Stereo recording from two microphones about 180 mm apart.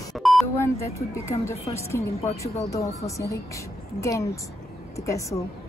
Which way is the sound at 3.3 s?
15° left (ahead or behind).